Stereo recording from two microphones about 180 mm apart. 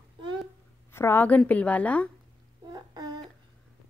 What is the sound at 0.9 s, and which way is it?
A woman's voice, 10° left (ahead or behind).